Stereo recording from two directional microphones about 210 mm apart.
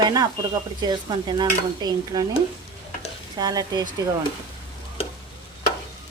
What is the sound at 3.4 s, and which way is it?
Speech, 20° right (ahead or behind).